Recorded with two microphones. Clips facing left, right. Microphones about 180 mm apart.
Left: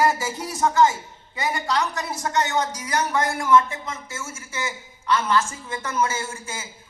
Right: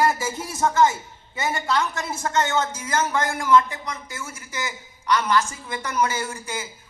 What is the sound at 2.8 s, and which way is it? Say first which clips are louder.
A woman's voice: even; 15° left (ahead or behind).